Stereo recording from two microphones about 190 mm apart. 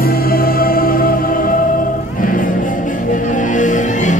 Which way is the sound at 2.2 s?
45° left (ahead or behind).